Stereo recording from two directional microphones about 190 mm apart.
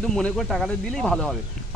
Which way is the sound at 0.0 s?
5° left (ahead or behind).